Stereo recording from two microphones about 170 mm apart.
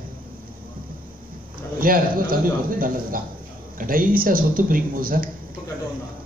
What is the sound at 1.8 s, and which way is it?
A man's voice, 55° right (ahead or behind).